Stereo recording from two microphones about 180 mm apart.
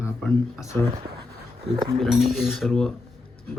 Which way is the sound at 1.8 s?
Centre (ahead or behind).